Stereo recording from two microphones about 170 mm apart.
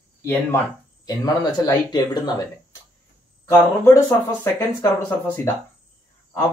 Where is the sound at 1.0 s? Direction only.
20° left (ahead or behind).